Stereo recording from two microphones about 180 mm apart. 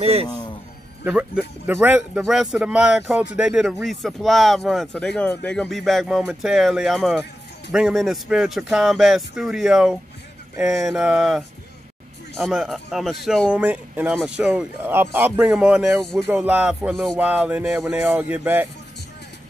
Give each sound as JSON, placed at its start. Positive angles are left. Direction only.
{"t": 0.0, "sound": "a man's voice", "side_deg": -35}
{"t": 1.0, "sound": "speech", "side_deg": -5}